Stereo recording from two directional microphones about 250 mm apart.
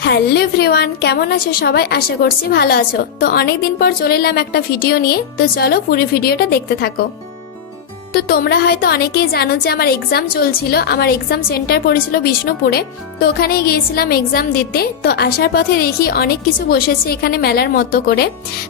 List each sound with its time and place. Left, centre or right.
0.0 s a woman's voice: left
8.1 s a woman's voice: left